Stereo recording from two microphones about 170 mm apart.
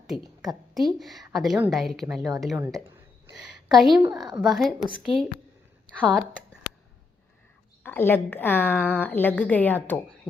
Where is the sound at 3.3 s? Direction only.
Centre (ahead or behind).